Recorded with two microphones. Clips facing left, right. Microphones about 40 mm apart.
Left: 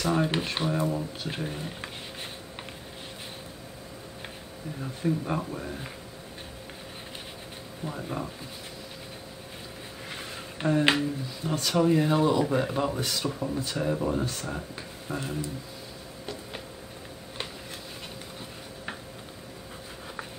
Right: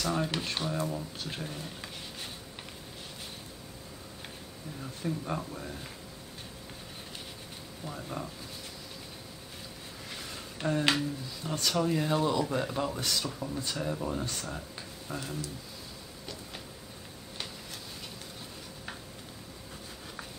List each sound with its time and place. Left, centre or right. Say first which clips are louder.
0.0 s speech: left 5 dB; left
5.0 s speech: left 6 dB; centre
7.8 s speech: left 5 dB; centre
10.0 s a sound: left 3 dB; left
11.7 s speech: left 6 dB; centre